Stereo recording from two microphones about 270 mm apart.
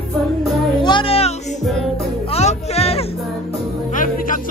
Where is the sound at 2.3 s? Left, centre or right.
Left.